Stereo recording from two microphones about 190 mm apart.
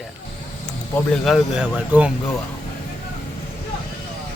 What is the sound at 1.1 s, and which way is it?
Speech, centre (ahead or behind).